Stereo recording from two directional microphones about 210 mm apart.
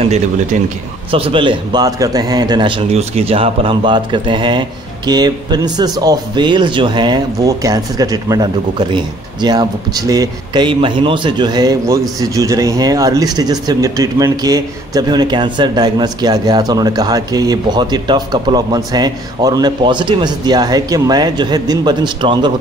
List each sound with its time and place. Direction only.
0.0 s a man's voice: 30° right (ahead or behind)